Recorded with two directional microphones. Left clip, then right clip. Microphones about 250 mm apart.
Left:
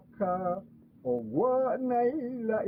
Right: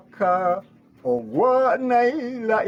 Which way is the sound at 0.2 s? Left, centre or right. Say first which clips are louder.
Right 10 dB; centre.